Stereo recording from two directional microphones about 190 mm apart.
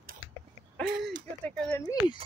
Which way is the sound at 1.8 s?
20° left (ahead or behind).